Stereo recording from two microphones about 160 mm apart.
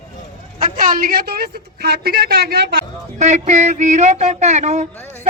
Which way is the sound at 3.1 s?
45° right (ahead or behind).